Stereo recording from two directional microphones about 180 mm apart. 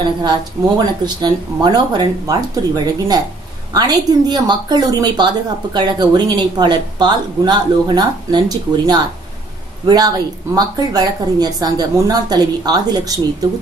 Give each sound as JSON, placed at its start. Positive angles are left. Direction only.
{"t": 0.7, "sound": "a woman's voice", "side_deg": -25}